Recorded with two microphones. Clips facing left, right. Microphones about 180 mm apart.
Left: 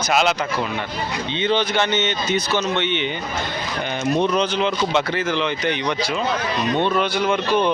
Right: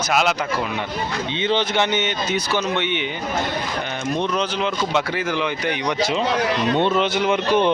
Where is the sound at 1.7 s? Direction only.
15° right (ahead or behind).